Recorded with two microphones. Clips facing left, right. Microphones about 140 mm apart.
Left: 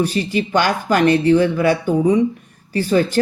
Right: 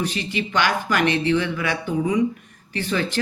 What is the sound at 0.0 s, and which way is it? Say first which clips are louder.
Speech: left 7 dB; 35° left (ahead or behind).